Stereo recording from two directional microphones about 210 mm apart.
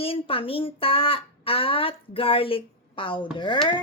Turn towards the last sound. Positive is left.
turn(degrees=20)  # may be behind; listen again after turning